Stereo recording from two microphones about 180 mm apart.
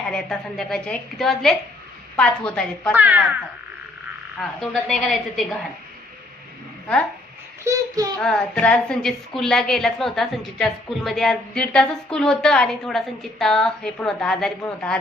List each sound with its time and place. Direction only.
0.1 s a woman's voice: 5° left (ahead or behind)
2.9 s child singing: 10° right (ahead or behind)
4.4 s a woman's voice: centre (ahead or behind)
7.6 s child singing: 20° right (ahead or behind)
8.2 s a woman's voice: 5° left (ahead or behind)